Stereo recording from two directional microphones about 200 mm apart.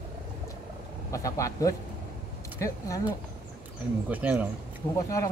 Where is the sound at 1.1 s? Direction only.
15° left (ahead or behind).